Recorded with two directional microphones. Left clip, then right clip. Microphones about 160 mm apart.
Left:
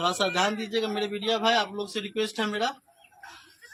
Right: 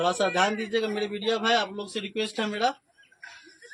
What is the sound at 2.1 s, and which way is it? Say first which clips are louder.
Speech: left 1 dB; 20° left (ahead or behind).